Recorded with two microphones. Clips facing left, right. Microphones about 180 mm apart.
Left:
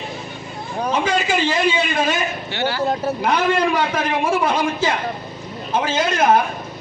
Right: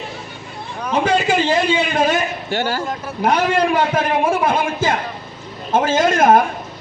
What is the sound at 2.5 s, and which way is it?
Speech, 45° right (ahead or behind).